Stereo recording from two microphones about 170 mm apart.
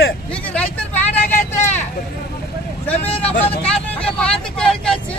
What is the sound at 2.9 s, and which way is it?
Speech, 35° left (ahead or behind).